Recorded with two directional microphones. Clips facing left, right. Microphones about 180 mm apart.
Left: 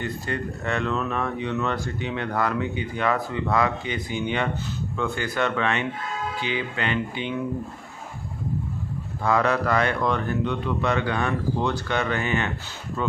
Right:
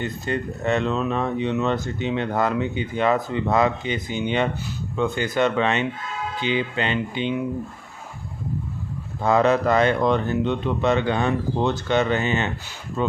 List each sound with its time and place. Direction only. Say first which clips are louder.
0.0 s speech: right 3 dB; 20° right (ahead or behind)
9.2 s speech: right 4 dB; 25° right (ahead or behind)